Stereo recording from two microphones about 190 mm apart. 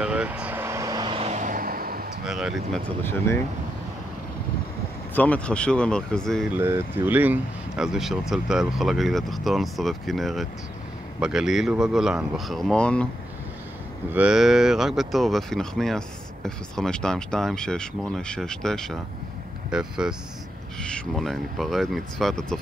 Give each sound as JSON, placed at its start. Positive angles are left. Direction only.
{"t": 0.0, "sound": "vehicle", "side_deg": -5}
{"t": 2.2, "sound": "speech", "side_deg": -5}
{"t": 3.0, "sound": "speech", "side_deg": 10}
{"t": 5.1, "sound": "speech", "side_deg": 10}
{"t": 6.5, "sound": "speech", "side_deg": -15}
{"t": 14.1, "sound": "speech", "side_deg": -5}